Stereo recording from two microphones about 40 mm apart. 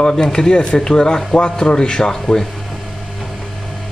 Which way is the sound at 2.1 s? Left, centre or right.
Centre.